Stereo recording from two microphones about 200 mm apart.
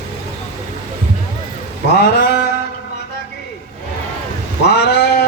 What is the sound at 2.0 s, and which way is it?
Mantra, 55° left (ahead or behind).